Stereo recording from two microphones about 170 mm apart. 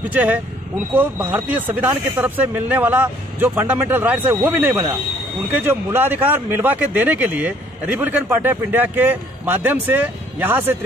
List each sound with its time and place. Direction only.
0.1 s speech: 10° right (ahead or behind)